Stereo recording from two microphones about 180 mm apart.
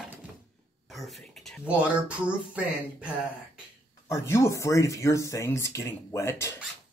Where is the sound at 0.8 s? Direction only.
Centre (ahead or behind).